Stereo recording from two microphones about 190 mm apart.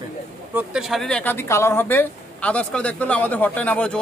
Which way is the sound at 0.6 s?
5° right (ahead or behind).